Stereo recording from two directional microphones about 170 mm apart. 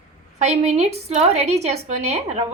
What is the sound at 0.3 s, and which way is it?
A woman's voice, 40° right (ahead or behind).